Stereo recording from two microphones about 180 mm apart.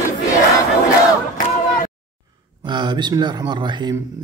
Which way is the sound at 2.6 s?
25° right (ahead or behind).